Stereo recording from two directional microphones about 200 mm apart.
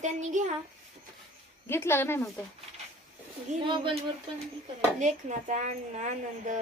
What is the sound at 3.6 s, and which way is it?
Speech, 25° right (ahead or behind).